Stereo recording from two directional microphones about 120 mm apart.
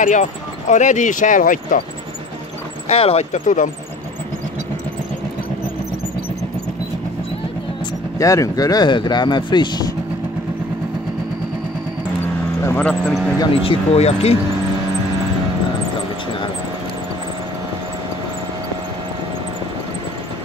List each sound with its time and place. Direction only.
0.0 s speech: 85° left
2.9 s speech: 55° left (ahead or behind)
3.3 s speech: 90° left
8.2 s speech: 25° left (ahead or behind)
12.6 s speech: 10° left (ahead or behind)
13.6 s speech: 55° left (ahead or behind)